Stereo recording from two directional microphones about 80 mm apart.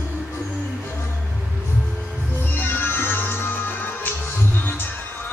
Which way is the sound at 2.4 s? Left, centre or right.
Left.